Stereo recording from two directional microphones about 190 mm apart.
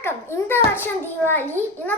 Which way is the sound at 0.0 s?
10° left (ahead or behind).